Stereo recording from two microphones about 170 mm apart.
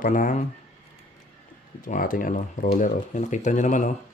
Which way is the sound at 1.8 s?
50° left (ahead or behind).